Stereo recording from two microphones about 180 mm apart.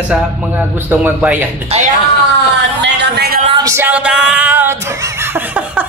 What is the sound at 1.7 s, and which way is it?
Speech, 35° right (ahead or behind).